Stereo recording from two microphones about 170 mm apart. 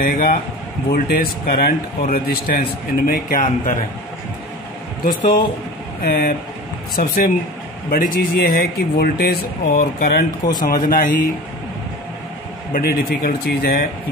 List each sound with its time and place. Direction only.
0.0 s speech: 60° left (ahead or behind)
6.0 s speech: 65° left (ahead or behind)
12.7 s speech: 65° left (ahead or behind)